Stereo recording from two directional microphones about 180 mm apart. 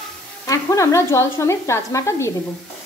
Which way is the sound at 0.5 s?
15° left (ahead or behind).